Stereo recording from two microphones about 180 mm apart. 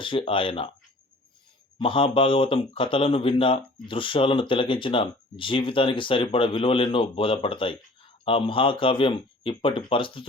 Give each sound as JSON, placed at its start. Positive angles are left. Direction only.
{"t": 0.0, "sound": "speech", "side_deg": 30}
{"t": 1.8, "sound": "speech", "side_deg": 30}